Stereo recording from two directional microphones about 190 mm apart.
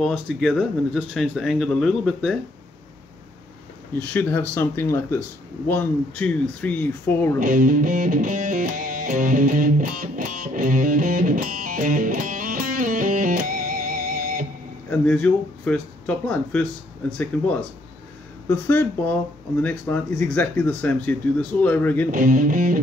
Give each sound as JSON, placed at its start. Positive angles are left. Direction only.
{"t": 0.0, "sound": "speech", "side_deg": 0}
{"t": 4.0, "sound": "speech", "side_deg": 10}
{"t": 7.3, "sound": "music", "side_deg": -45}
{"t": 14.9, "sound": "speech", "side_deg": 5}
{"t": 18.5, "sound": "speech", "side_deg": 10}
{"t": 22.1, "sound": "speech", "side_deg": -45}